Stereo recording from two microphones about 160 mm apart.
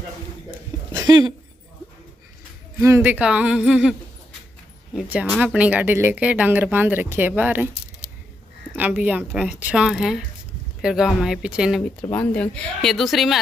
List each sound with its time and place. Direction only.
1.0 s speech: 25° right (ahead or behind)
2.8 s speech: 15° right (ahead or behind)
4.9 s speech: 10° right (ahead or behind)
8.7 s speech: 10° right (ahead or behind)
12.1 s speech: 10° left (ahead or behind)